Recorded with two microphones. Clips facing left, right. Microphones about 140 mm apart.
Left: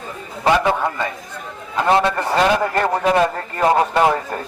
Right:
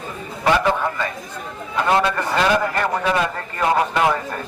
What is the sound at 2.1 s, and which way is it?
Speech, 35° left (ahead or behind).